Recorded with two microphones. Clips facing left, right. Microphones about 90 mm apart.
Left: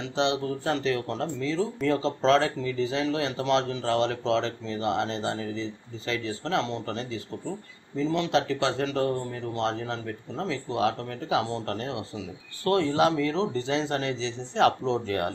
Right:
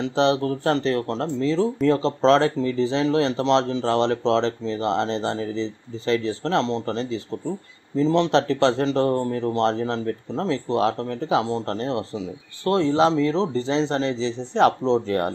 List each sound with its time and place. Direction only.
0.0 s speech: 40° right (ahead or behind)
9.1 s speech: 45° right (ahead or behind)